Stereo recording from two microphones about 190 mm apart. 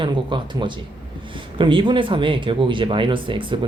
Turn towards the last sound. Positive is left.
turn(degrees=-25)  # may be behind; listen again after turning